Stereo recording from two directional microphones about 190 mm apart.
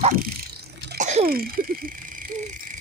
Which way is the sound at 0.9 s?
40° right (ahead or behind).